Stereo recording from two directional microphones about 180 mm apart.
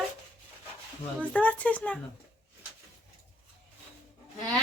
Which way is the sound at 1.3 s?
10° left (ahead or behind).